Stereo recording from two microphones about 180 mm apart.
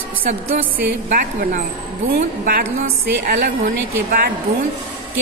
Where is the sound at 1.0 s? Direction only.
50° right (ahead or behind).